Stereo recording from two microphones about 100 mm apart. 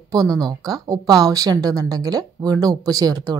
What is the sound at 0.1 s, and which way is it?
Speech, 40° right (ahead or behind).